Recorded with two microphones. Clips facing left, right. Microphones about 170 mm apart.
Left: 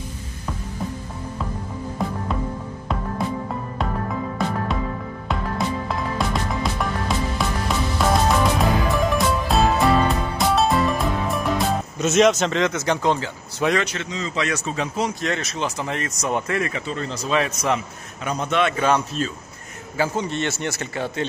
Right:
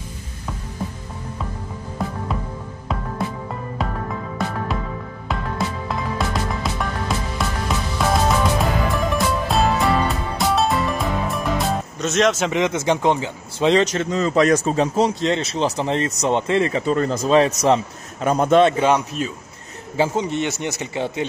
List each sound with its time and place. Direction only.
2.0 s music: centre (ahead or behind)
4.7 s music: centre (ahead or behind)
12.5 s speech: 20° right (ahead or behind)
13.8 s a man's voice: 45° right (ahead or behind)
14.8 s speech: 30° right (ahead or behind)
16.8 s a man's voice: 45° right (ahead or behind)
17.3 s speech: 35° right (ahead or behind)
18.2 s a man's voice: 45° right (ahead or behind)
18.6 s speech: 30° right (ahead or behind)
18.9 s a man's voice: 15° right (ahead or behind)